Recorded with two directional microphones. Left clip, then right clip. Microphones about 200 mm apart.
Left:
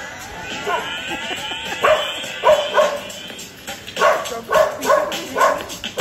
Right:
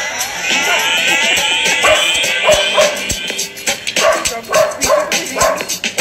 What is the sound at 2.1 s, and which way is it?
Music, 35° right (ahead or behind).